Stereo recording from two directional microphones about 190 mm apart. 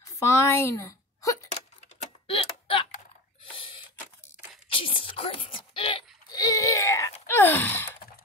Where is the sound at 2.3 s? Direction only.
30° left (ahead or behind); by 7.9 s 10° left (ahead or behind).